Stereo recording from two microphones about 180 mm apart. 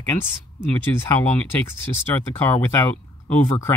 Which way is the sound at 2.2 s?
10° left (ahead or behind).